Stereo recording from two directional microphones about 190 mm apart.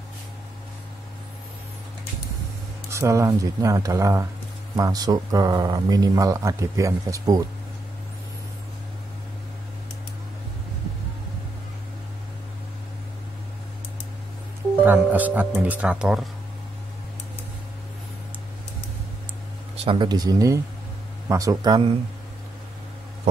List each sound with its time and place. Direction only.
2.9 s speech: 15° right (ahead or behind)
14.8 s speech: 10° right (ahead or behind)
19.8 s speech: 25° right (ahead or behind)